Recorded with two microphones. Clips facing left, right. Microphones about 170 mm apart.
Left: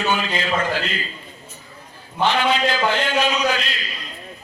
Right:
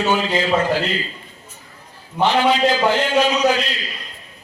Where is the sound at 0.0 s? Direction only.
30° right (ahead or behind).